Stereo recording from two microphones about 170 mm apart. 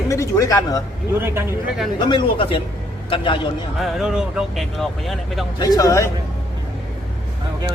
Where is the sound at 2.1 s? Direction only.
30° left (ahead or behind).